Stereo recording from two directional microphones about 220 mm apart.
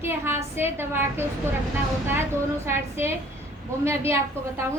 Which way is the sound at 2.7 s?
10° right (ahead or behind).